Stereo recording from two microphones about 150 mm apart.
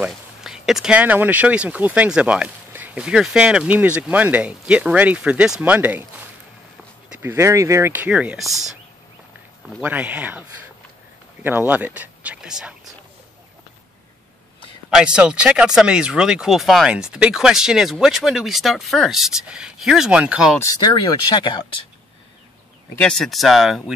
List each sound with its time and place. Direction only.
0.0 s speech: 5° right (ahead or behind)
7.2 s speech: 15° right (ahead or behind); by 8.7 s centre (ahead or behind)
9.8 s speech: 10° right (ahead or behind)
11.4 s speech: 10° right (ahead or behind)
15.0 s speech: 5° right (ahead or behind)
20.5 s speech: 25° left (ahead or behind)
22.9 s speech: 5° left (ahead or behind)